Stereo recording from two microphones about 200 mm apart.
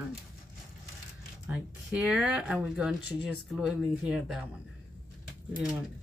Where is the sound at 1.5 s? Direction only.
5° right (ahead or behind).